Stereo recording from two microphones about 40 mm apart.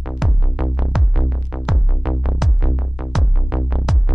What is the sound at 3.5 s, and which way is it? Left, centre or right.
Music, right.